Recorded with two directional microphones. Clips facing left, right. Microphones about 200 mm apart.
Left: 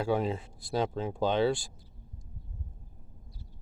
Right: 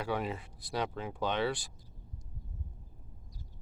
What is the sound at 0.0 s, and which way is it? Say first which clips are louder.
Speech: left 6 dB; 30° left (ahead or behind).